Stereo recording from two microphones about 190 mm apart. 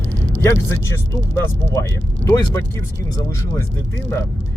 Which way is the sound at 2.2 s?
15° left (ahead or behind).